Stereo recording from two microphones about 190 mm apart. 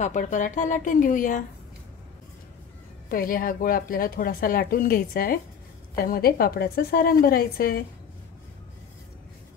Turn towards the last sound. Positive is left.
turn(degrees=50)  # may be behind; listen again after turning